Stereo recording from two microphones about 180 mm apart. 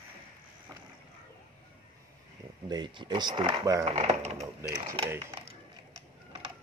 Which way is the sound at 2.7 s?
25° right (ahead or behind).